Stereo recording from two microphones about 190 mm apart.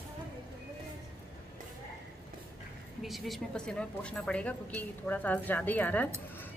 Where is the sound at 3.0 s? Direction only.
Centre (ahead or behind).